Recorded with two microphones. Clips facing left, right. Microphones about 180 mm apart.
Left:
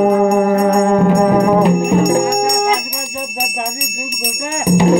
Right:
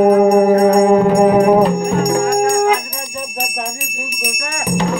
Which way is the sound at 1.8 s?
20° left (ahead or behind).